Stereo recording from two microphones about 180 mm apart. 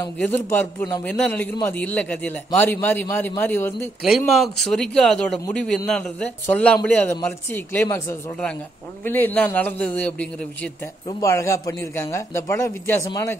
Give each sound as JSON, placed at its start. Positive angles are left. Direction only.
{"t": 0.2, "sound": "a man's voice", "side_deg": 10}
{"t": 4.3, "sound": "a man's voice", "side_deg": 0}